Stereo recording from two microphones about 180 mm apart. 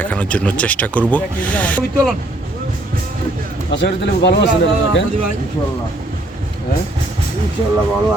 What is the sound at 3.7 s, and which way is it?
Speech, 85° left.